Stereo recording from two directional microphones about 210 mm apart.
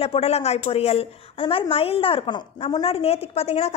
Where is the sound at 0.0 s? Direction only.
30° left (ahead or behind).